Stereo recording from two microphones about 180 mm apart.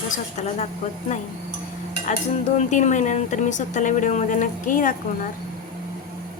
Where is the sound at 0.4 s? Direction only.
40° left (ahead or behind).